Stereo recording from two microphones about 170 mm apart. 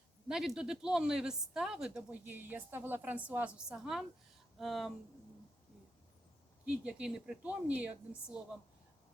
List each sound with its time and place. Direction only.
0.3 s speech: 5° right (ahead or behind)
6.7 s a woman's voice: 5° right (ahead or behind)